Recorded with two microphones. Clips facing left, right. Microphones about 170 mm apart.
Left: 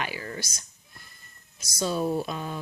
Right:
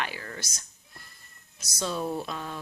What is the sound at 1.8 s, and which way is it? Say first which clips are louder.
Speech: left 4 dB; 5° left (ahead or behind).